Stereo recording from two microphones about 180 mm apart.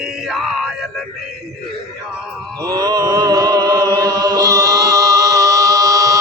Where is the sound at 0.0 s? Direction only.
5° right (ahead or behind).